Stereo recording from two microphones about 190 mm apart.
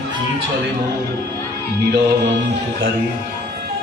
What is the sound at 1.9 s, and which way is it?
Music, 65° right (ahead or behind).